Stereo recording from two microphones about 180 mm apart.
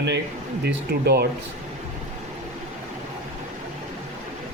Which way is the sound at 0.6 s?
65° right (ahead or behind).